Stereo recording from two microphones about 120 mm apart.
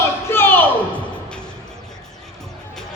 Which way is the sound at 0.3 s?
20° left (ahead or behind).